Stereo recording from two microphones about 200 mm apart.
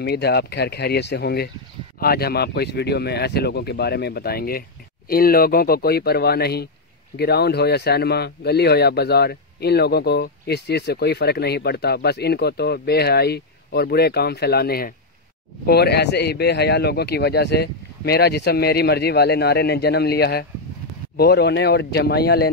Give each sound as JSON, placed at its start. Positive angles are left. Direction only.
{"t": 0.0, "sound": "speech", "side_deg": 55}